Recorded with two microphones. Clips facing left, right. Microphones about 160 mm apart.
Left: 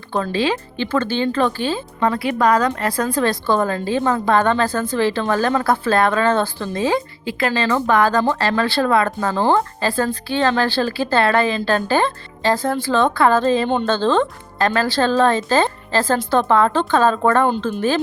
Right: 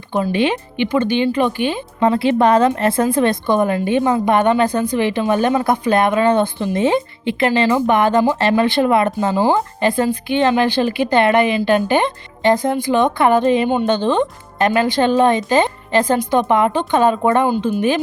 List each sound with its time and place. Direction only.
0.1 s speech: 20° right (ahead or behind)